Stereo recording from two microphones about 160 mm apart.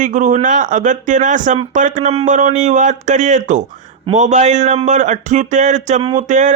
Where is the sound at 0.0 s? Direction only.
55° right (ahead or behind).